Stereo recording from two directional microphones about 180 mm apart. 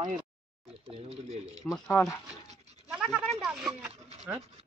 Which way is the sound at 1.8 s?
15° left (ahead or behind).